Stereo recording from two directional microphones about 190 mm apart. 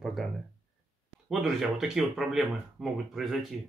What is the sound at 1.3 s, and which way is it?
Speech, centre (ahead or behind).